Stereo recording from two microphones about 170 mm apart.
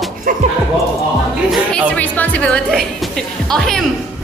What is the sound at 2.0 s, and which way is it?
Speech, 10° left (ahead or behind).